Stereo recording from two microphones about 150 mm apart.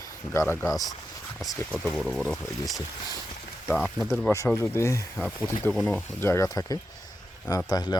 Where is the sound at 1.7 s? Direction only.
5° left (ahead or behind).